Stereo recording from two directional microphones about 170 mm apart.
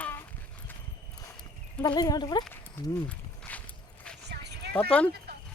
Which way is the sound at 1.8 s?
20° left (ahead or behind).